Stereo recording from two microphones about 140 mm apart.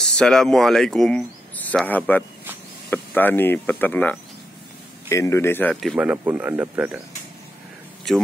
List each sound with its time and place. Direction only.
0.0 s speech: 5° left (ahead or behind)
5.9 s speech: 10° right (ahead or behind)
8.1 s speech: centre (ahead or behind)